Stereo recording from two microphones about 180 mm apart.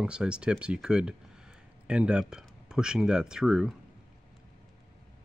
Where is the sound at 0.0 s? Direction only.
5° right (ahead or behind).